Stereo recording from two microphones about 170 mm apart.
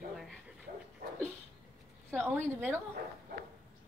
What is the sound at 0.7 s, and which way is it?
Dog, 45° right (ahead or behind).